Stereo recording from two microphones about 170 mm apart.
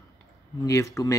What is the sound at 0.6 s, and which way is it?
Speech, 20° left (ahead or behind).